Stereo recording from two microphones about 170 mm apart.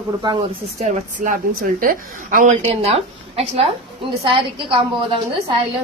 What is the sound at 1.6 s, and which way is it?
Speech, 55° right (ahead or behind).